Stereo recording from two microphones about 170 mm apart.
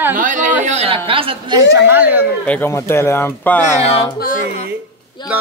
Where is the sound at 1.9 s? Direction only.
10° right (ahead or behind).